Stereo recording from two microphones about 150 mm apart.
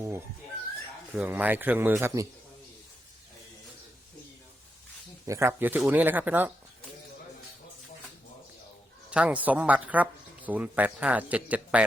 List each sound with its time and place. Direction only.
1.1 s speech: 10° right (ahead or behind)
5.2 s speech: 20° right (ahead or behind)
9.0 s speech: 10° right (ahead or behind)